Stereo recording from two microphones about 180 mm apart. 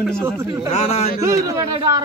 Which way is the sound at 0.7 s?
40° left (ahead or behind).